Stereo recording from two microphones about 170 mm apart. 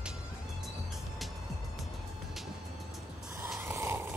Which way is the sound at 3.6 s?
15° right (ahead or behind).